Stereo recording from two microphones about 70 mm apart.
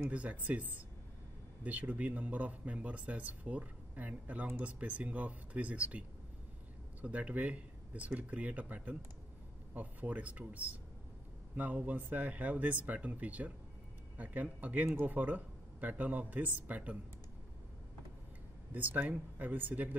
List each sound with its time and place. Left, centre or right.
0.1 s speech: centre
18.7 s speech: right